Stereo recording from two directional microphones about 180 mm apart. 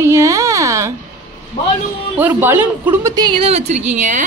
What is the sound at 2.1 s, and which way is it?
Speech, 10° right (ahead or behind).